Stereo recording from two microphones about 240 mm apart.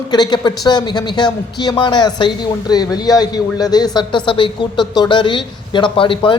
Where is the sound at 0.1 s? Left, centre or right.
Centre.